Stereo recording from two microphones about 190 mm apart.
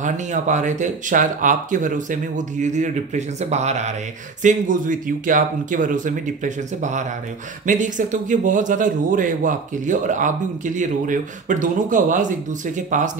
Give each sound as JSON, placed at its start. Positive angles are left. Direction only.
{"t": 0.0, "sound": "a man's voice", "side_deg": -40}